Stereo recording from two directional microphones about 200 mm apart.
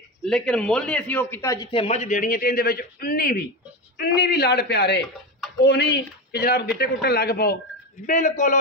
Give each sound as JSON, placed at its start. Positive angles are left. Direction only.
{"t": 0.2, "sound": "a man's voice", "side_deg": 5}